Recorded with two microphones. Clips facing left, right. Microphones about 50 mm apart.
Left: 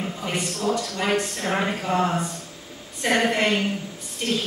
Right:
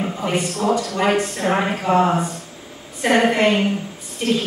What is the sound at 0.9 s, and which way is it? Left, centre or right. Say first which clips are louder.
Speech: right 5 dB; centre.